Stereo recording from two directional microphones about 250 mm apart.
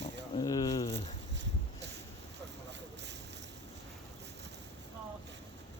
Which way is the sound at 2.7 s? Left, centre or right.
Right.